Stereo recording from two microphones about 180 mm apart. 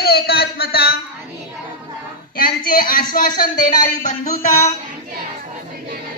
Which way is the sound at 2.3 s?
55° left (ahead or behind).